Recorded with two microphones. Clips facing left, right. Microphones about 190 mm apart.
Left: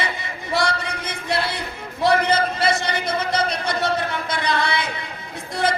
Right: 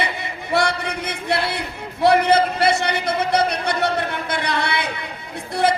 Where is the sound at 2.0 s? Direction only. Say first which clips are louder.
Right 3 dB; 60° right (ahead or behind).